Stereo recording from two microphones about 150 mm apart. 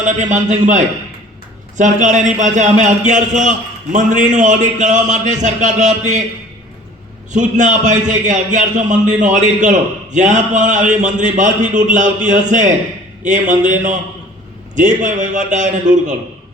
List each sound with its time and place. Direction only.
0.0 s a man's voice: 55° right (ahead or behind)
7.3 s a man's voice: 55° right (ahead or behind)